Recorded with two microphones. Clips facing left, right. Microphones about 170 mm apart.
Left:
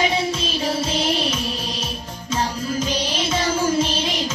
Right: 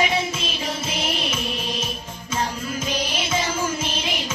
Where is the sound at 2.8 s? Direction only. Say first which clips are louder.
Left 2 dB; 10° right (ahead or behind).